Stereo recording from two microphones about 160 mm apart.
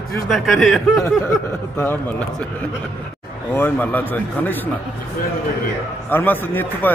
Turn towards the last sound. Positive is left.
turn(degrees=10)  # may be behind; listen again after turning